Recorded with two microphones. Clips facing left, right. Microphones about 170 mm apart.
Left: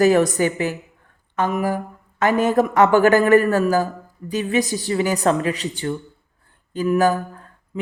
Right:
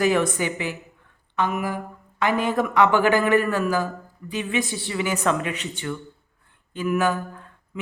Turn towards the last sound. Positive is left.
turn(degrees=40)  # may be behind; listen again after turning